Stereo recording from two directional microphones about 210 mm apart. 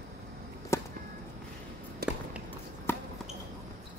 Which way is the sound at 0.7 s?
15° left (ahead or behind).